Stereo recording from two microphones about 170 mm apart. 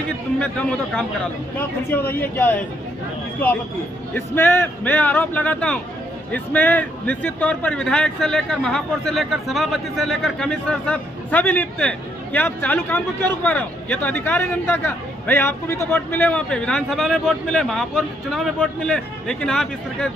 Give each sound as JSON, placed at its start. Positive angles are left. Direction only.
{"t": 0.4, "sound": "a man's voice", "side_deg": 5}
{"t": 4.1, "sound": "a man's voice", "side_deg": 10}